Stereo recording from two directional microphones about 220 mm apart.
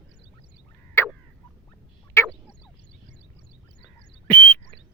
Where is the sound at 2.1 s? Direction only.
10° left (ahead or behind).